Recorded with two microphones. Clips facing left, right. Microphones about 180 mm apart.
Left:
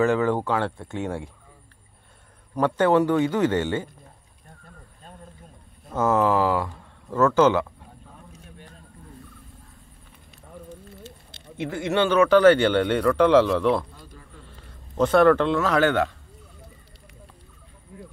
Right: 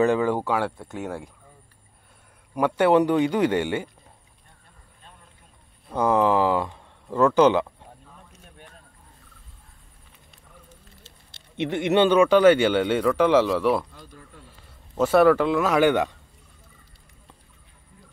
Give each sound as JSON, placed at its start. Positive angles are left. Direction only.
{"t": 0.0, "sound": "speech", "side_deg": -15}
{"t": 2.5, "sound": "speech", "side_deg": -10}
{"t": 5.9, "sound": "speech", "side_deg": -15}
{"t": 11.5, "sound": "speech", "side_deg": -20}
{"t": 15.0, "sound": "speech", "side_deg": -5}
{"t": 17.9, "sound": "a sound", "side_deg": 70}